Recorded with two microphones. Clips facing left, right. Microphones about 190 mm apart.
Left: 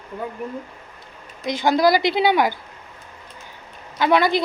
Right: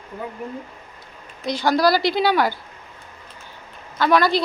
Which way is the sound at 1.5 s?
20° left (ahead or behind).